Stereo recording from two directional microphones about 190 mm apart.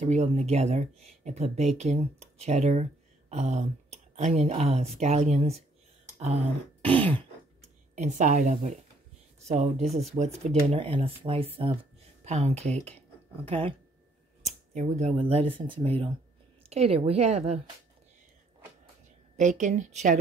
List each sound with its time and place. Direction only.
0.0 s speech: 35° right (ahead or behind)
6.8 s speech: 30° right (ahead or behind)
7.9 s speech: 40° right (ahead or behind)
19.3 s speech: 40° right (ahead or behind)